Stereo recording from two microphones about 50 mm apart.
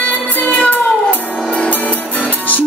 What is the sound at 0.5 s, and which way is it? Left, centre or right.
Cat, left.